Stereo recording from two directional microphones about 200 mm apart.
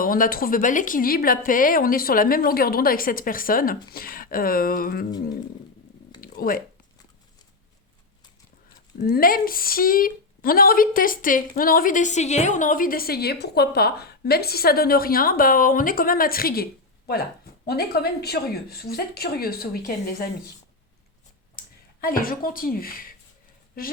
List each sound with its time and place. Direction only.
0.0 s a woman's voice: 45° left (ahead or behind)
6.1 s a sound: 45° left (ahead or behind)
9.0 s a woman's voice: 45° left (ahead or behind)
17.7 s a woman's voice: 55° left (ahead or behind)
22.0 s a woman's voice: 45° left (ahead or behind)